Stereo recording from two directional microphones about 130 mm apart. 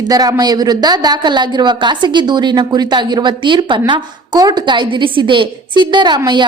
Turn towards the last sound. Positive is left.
turn(degrees=-35)  # may be behind; listen again after turning